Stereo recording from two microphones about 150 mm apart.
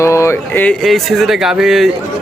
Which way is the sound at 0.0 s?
20° left (ahead or behind).